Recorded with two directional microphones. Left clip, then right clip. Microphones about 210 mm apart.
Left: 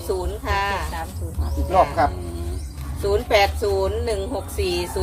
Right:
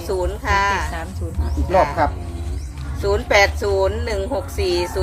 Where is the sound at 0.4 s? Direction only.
10° right (ahead or behind).